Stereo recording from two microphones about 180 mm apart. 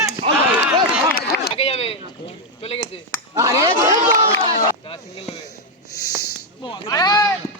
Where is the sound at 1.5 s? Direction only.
35° left (ahead or behind).